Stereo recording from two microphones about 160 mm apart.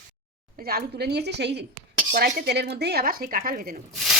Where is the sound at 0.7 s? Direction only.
75° right (ahead or behind).